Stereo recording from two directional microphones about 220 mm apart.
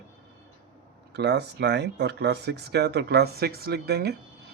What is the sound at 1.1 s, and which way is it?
Speech, 50° right (ahead or behind).